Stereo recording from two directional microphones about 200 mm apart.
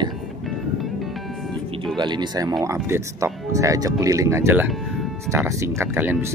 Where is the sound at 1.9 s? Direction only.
20° right (ahead or behind).